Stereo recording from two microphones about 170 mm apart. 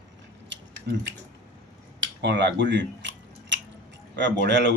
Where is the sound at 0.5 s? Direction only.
90° right.